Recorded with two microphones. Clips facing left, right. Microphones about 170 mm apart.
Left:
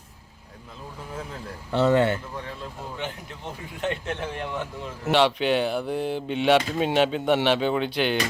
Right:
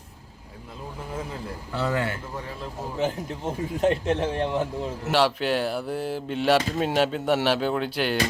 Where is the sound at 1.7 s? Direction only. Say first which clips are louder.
Left 7 dB; 25° left (ahead or behind).